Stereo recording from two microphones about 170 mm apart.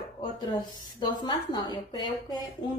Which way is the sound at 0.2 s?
25° left (ahead or behind).